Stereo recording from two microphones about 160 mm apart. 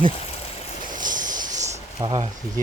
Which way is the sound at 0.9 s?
55° right (ahead or behind).